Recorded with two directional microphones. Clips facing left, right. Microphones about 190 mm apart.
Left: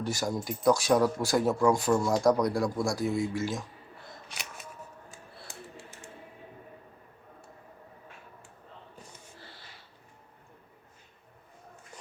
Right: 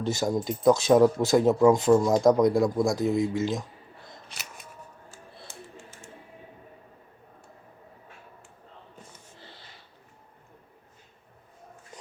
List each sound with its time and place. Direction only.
0.0 s speech: 20° right (ahead or behind)